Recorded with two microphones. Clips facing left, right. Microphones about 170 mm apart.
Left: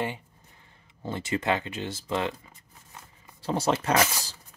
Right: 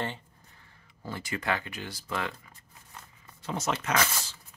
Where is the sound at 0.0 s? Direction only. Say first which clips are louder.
Left 3 dB; 15° left (ahead or behind).